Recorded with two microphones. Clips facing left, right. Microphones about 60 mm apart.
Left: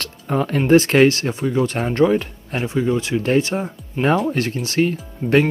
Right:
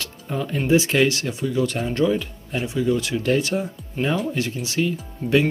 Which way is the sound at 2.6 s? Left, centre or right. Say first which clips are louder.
Left 2 dB; left.